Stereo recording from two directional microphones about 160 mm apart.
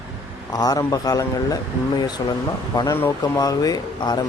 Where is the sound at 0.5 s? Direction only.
25° left (ahead or behind).